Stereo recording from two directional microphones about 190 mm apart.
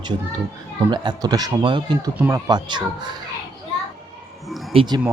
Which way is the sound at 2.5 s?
25° right (ahead or behind).